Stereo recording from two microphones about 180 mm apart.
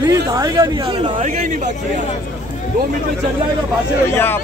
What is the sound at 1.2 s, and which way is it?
Speech, 40° right (ahead or behind).